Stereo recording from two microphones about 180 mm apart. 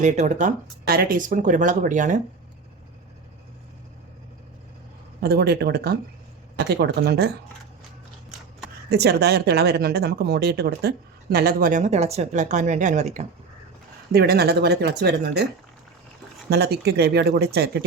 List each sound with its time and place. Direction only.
0.0 s speech: 40° right (ahead or behind)
5.2 s speech: 60° right (ahead or behind)
8.9 s speech: 65° right (ahead or behind); by 13.2 s 40° right (ahead or behind)
14.1 s speech: 60° right (ahead or behind)
16.5 s speech: 65° right (ahead or behind)